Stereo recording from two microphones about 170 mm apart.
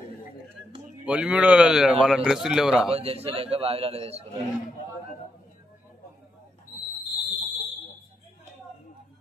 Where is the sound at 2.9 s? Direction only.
35° right (ahead or behind).